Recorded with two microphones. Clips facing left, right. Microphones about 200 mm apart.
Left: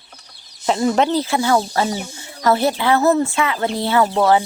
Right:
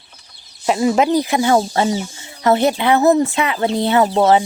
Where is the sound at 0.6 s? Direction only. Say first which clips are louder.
Right 2 dB; 10° right (ahead or behind).